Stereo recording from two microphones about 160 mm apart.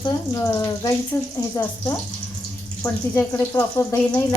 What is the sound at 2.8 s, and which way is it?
Speech, 15° left (ahead or behind).